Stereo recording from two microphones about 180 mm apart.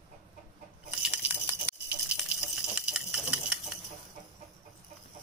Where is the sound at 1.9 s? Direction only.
5° right (ahead or behind).